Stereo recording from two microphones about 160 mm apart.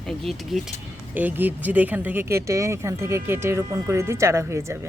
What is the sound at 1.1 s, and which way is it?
Speech, 10° right (ahead or behind).